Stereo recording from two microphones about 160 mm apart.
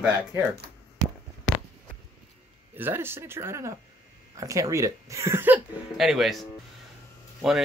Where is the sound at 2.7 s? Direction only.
15° right (ahead or behind).